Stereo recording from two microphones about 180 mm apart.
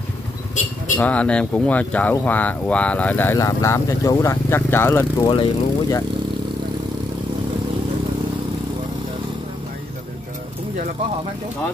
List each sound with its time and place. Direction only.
0.9 s speech: 5° left (ahead or behind); by 6.0 s 25° left (ahead or behind)